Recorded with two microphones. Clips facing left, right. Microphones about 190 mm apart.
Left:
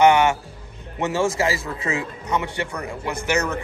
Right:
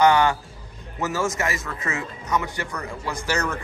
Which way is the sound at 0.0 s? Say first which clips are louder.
Left 2 dB; 25° left (ahead or behind).